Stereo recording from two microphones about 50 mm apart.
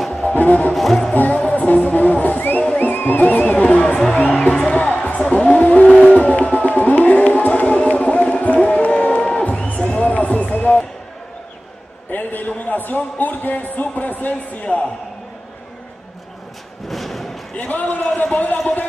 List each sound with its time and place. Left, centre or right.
0.2 s music: left
0.7 s music: centre
1.1 s music: left
5.3 s a sound: left
6.0 s music: left
12.1 s a man's voice: left
16.8 s a sound: centre
17.6 s a sound: left
18.3 s a man's voice: left